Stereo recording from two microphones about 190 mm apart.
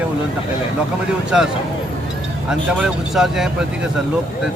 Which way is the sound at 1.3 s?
5° right (ahead or behind).